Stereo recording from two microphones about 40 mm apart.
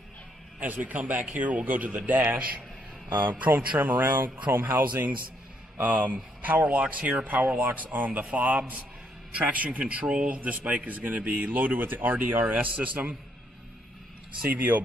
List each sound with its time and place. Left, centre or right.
0.6 s speech: right
3.1 s speech: right
3.8 s speech: right
4.7 s speech: right
12.6 s speech: right
14.4 s speech: right